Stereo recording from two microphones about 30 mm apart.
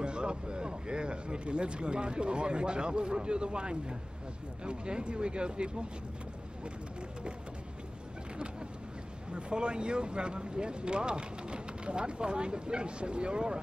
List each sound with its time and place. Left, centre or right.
0.0 s speech: right
9.3 s speech: right